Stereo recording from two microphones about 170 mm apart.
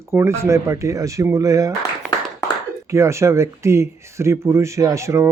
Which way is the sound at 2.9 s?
15° right (ahead or behind).